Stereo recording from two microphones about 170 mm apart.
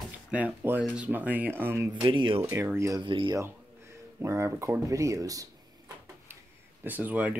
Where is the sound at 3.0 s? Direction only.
30° right (ahead or behind).